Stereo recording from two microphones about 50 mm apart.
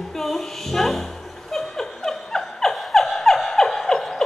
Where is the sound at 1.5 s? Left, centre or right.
Centre.